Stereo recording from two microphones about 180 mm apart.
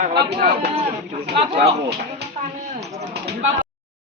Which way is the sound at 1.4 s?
35° right (ahead or behind).